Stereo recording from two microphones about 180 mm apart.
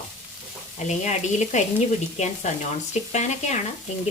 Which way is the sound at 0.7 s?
40° left (ahead or behind).